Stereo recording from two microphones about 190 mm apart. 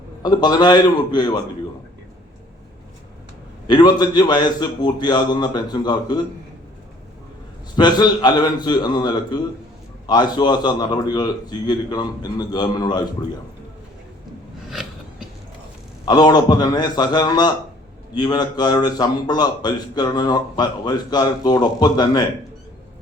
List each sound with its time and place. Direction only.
0.2 s a man's voice: 20° left (ahead or behind)
3.7 s a man's voice: 20° left (ahead or behind)
7.8 s a man's voice: 20° left (ahead or behind)
16.0 s a man's voice: 20° left (ahead or behind)